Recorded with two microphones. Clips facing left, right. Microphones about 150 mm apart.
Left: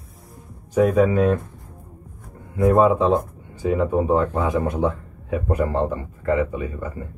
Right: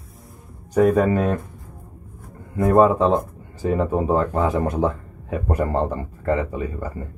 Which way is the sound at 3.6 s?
40° right (ahead or behind).